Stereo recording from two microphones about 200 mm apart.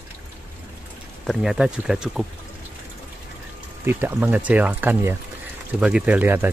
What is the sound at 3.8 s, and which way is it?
Speech, 10° right (ahead or behind).